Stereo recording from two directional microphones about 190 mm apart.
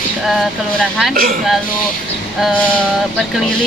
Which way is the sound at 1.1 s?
50° right (ahead or behind).